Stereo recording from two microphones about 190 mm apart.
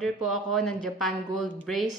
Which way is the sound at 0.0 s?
Centre (ahead or behind).